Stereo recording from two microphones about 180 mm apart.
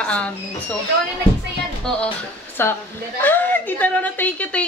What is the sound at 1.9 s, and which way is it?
A woman's voice, 5° left (ahead or behind).